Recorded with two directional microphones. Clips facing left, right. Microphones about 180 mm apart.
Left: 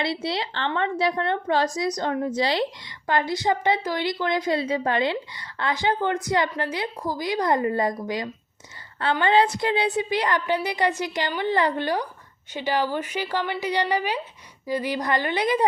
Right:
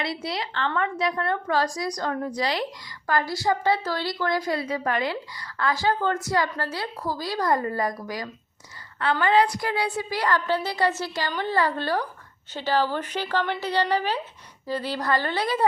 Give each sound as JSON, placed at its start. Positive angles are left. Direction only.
{"t": 0.0, "sound": "a woman's voice", "side_deg": 25}